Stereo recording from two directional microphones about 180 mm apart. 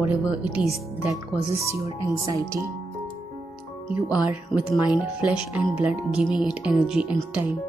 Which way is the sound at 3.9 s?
10° right (ahead or behind).